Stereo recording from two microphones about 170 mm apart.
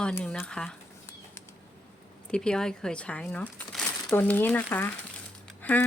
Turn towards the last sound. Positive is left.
turn(degrees=10)  # may be behind; listen again after turning